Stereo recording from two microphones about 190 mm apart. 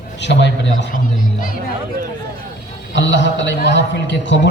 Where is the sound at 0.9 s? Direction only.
45° left (ahead or behind).